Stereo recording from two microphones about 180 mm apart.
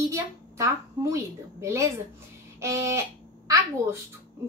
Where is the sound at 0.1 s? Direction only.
15° right (ahead or behind).